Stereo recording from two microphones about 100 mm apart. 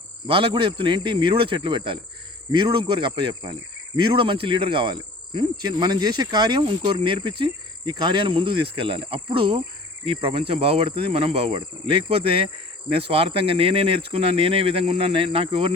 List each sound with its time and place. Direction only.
0.3 s cricket: 60° right (ahead or behind)
10.1 s speech: 70° right (ahead or behind)